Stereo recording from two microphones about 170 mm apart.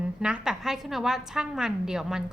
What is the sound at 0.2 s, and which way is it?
A woman's voice, 5° right (ahead or behind).